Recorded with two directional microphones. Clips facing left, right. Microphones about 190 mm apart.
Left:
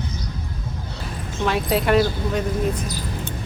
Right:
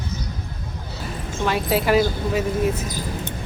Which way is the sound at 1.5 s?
Centre (ahead or behind).